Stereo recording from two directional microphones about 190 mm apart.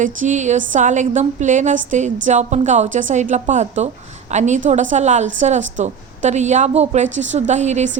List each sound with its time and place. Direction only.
0.0 s a woman's voice: 40° right (ahead or behind)